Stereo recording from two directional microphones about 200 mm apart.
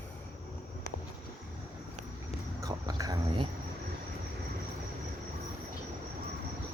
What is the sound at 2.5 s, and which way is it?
Dog, 15° right (ahead or behind).